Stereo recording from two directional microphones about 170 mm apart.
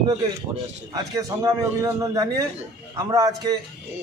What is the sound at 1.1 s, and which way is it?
A man's voice, 20° right (ahead or behind).